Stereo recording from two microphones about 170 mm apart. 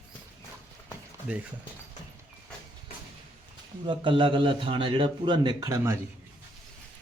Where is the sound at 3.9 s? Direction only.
30° right (ahead or behind).